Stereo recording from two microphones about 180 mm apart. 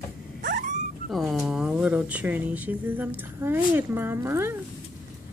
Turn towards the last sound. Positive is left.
turn(degrees=-15)  # may be behind; listen again after turning